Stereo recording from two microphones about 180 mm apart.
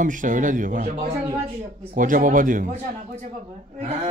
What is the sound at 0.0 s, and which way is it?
Speech, 45° right (ahead or behind).